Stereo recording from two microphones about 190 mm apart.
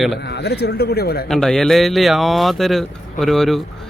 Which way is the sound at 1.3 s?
Centre (ahead or behind).